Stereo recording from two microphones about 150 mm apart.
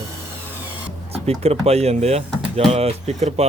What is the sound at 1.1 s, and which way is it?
Speech, 45° right (ahead or behind).